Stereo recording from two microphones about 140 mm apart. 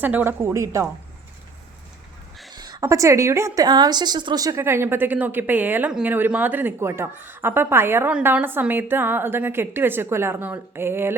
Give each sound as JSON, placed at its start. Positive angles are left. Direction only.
{"t": 0.0, "sound": "a woman's voice", "side_deg": -10}
{"t": 2.5, "sound": "a woman's voice", "side_deg": -30}